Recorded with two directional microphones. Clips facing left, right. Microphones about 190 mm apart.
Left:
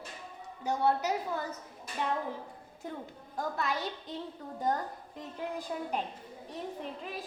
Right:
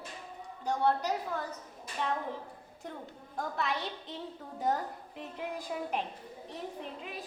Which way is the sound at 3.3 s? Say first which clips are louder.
Left 1 dB; centre (ahead or behind).